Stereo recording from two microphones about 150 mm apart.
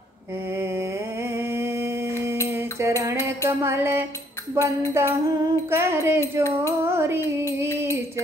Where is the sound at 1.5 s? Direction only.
15° right (ahead or behind).